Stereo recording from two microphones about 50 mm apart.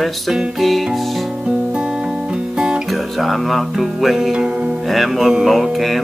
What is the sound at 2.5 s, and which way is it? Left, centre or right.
Music, centre.